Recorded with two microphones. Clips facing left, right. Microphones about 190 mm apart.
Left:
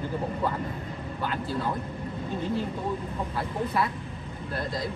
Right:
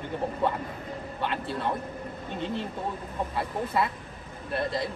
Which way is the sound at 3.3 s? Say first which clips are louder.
Even; 25° right (ahead or behind).